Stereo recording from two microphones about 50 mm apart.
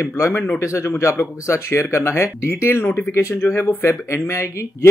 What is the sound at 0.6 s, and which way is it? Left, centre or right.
Speech, left.